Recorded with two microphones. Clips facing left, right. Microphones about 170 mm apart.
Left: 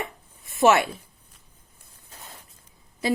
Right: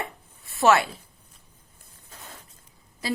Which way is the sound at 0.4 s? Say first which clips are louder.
Left 1 dB; 20° left (ahead or behind).